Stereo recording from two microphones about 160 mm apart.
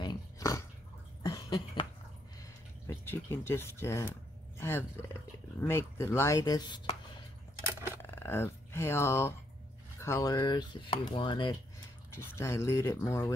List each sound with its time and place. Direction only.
0.0 s dog: 25° left (ahead or behind)
1.2 s cough: 20° left (ahead or behind)
2.9 s speech: 15° left (ahead or behind)
8.0 s speech: 15° left (ahead or behind); by 11.5 s 30° left (ahead or behind)
12.4 s speech: 15° left (ahead or behind)